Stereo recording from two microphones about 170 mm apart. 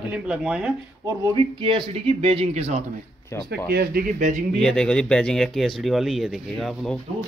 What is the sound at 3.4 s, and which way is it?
Speech, 70° right (ahead or behind).